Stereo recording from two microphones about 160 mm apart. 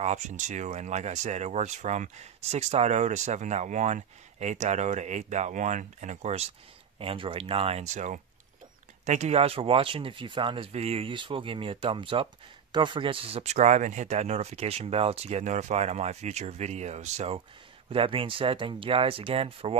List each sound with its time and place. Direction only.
0.0 s speech: 45° right (ahead or behind)